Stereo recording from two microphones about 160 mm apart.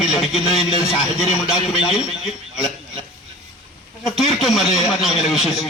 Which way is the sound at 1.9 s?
40° left (ahead or behind).